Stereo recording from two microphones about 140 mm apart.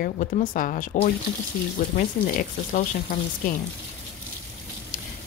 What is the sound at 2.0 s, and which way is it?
Speech, 90° left.